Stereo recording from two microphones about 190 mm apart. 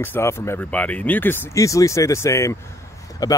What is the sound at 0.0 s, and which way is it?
Speech, 10° left (ahead or behind).